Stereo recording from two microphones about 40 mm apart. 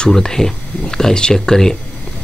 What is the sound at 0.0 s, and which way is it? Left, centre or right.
Speech, centre.